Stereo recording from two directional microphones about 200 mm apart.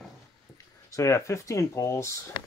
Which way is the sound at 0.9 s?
15° left (ahead or behind).